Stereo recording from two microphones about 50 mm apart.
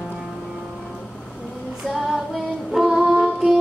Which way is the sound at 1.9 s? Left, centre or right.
Centre.